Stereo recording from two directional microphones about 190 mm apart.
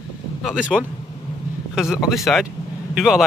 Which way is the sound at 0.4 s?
5° right (ahead or behind).